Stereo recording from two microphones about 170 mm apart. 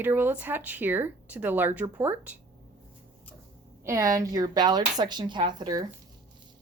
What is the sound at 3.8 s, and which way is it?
Speech, 20° right (ahead or behind).